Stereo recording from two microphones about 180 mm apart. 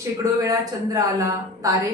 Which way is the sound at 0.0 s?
20° right (ahead or behind).